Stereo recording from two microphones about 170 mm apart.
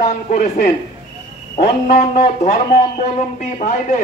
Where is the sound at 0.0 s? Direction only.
55° left (ahead or behind).